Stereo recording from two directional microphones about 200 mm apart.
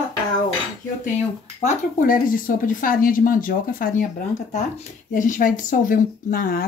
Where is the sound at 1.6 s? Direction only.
45° left (ahead or behind).